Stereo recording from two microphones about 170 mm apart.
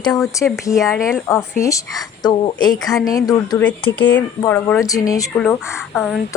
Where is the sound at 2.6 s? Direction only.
5° left (ahead or behind).